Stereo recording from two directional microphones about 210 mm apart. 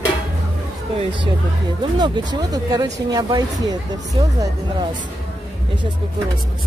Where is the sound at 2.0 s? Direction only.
20° right (ahead or behind).